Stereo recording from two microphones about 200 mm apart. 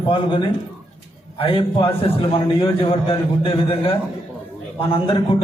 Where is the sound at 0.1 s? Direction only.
25° left (ahead or behind).